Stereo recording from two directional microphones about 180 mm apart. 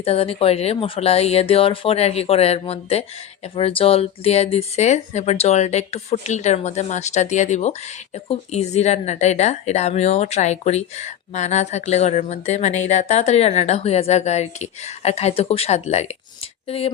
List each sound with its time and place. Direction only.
0.0 s speech: 35° left (ahead or behind)